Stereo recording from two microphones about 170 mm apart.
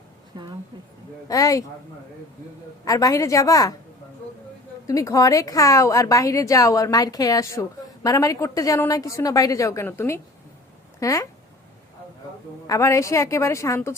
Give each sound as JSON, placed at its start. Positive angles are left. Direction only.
{"t": 1.3, "sound": "a woman's voice", "side_deg": 20}
{"t": 2.8, "sound": "a woman's voice", "side_deg": 20}
{"t": 4.9, "sound": "a woman's voice", "side_deg": 20}
{"t": 12.6, "sound": "a woman's voice", "side_deg": 20}